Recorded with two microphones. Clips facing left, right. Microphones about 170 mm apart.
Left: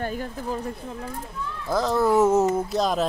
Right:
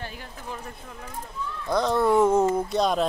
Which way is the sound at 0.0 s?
45° left (ahead or behind).